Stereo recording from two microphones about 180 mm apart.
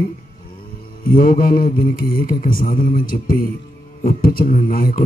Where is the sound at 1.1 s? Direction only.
50° left (ahead or behind).